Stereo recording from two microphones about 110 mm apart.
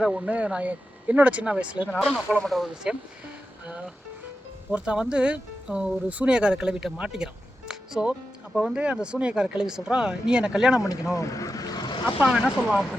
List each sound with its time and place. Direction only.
0.0 s speech: 10° right (ahead or behind)
2.0 s speech: centre (ahead or behind)
7.7 s music: 5° right (ahead or behind)
8.5 s speech: 5° right (ahead or behind)
10.8 s speech: 30° left (ahead or behind)